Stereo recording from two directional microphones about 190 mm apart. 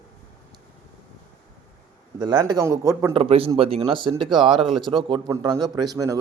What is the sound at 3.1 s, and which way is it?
A man's voice, 30° right (ahead or behind).